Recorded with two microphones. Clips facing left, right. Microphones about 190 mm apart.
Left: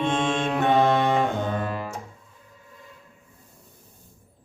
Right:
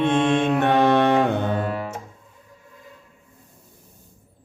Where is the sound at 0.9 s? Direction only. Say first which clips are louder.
Right 4 dB; 65° right (ahead or behind).